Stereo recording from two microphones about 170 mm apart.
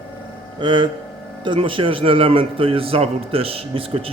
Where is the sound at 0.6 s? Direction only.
25° right (ahead or behind).